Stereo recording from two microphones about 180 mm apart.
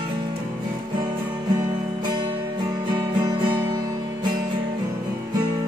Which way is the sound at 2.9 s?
25° right (ahead or behind).